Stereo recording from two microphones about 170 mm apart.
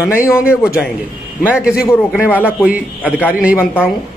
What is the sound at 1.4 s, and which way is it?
Speech, 5° right (ahead or behind).